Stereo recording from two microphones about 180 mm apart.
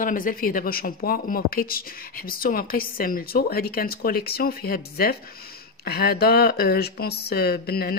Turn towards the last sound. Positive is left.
turn(degrees=60)  # may be behind; listen again after turning